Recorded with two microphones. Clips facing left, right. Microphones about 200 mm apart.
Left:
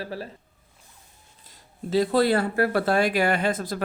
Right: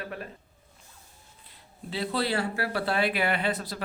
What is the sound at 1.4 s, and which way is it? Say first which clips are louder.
Speech: left 7 dB; 40° left (ahead or behind).